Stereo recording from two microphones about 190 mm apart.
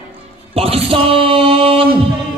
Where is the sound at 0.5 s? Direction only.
30° right (ahead or behind).